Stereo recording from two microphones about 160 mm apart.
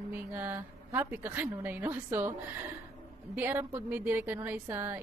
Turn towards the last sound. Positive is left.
turn(degrees=-15)  # may be behind; listen again after turning